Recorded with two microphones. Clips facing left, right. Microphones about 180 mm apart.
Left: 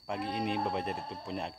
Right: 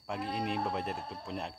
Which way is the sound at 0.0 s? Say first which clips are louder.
Left 1 dB; centre (ahead or behind).